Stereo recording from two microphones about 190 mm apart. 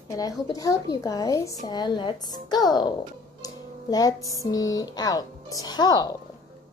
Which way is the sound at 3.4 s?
20° left (ahead or behind).